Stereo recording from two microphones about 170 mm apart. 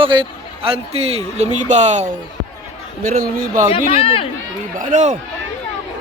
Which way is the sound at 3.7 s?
35° left (ahead or behind).